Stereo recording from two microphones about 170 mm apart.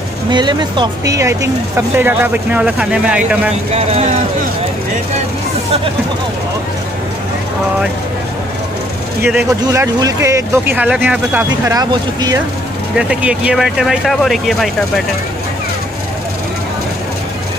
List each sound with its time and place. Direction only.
0.3 s speech: 25° right (ahead or behind); by 3.5 s 5° right (ahead or behind)
3.7 s speech: 40° right (ahead or behind)
9.2 s speech: 10° right (ahead or behind)
12.9 s speech: 5° right (ahead or behind)